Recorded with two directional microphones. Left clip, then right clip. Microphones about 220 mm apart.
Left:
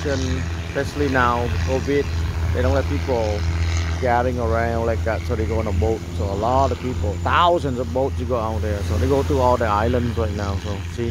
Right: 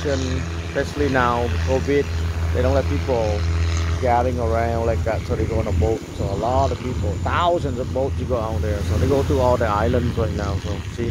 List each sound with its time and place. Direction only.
0.1 s speech: 50° left (ahead or behind)
0.7 s speech: centre (ahead or behind)
6.4 s speech: 20° left (ahead or behind)